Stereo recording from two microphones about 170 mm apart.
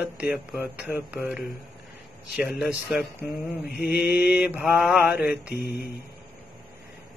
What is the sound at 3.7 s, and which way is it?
Mantra, 70° left (ahead or behind).